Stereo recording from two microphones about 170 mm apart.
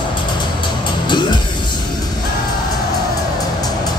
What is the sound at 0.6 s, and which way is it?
Music, 25° left (ahead or behind).